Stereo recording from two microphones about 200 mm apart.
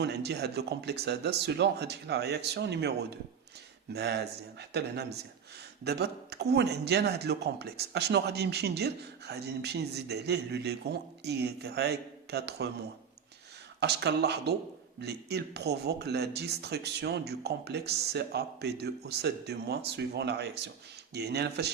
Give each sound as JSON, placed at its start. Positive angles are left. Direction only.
{"t": 0.0, "sound": "speech", "side_deg": -55}
{"t": 3.9, "sound": "speech", "side_deg": -55}
{"t": 13.7, "sound": "speech", "side_deg": -55}